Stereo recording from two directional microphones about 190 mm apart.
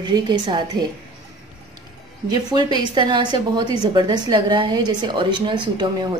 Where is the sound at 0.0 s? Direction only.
25° right (ahead or behind).